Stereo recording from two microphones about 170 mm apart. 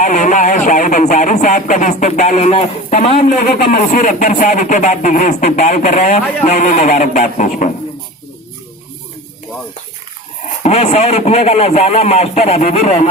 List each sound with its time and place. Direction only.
0.0 s speech: 45° left (ahead or behind)
3.3 s speech: 60° left (ahead or behind)
10.4 s speech: 40° left (ahead or behind)